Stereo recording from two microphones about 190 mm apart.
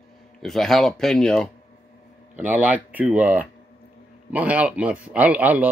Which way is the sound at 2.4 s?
10° right (ahead or behind).